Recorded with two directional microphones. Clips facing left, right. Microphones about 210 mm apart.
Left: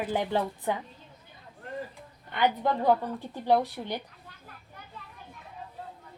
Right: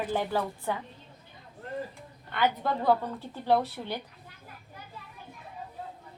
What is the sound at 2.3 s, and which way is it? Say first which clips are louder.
A woman's voice: left 2 dB; 15° left (ahead or behind).